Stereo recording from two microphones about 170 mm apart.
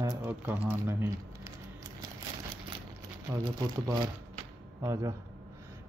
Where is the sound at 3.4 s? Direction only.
25° right (ahead or behind).